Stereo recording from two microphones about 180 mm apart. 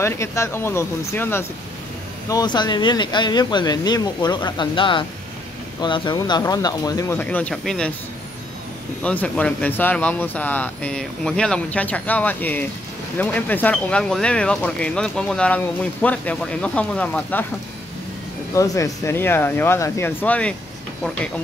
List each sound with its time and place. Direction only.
0.0 s speech: 15° left (ahead or behind)
9.0 s speech: 10° left (ahead or behind)
18.5 s speech: 15° left (ahead or behind)